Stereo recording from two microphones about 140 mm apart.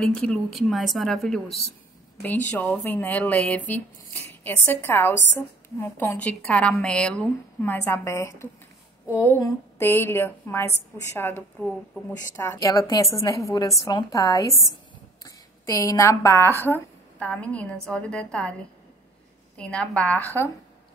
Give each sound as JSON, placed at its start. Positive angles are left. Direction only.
{"t": 0.0, "sound": "speech", "side_deg": 5}
{"t": 2.2, "sound": "a woman's voice", "side_deg": 10}
{"t": 19.5, "sound": "a woman's voice", "side_deg": 5}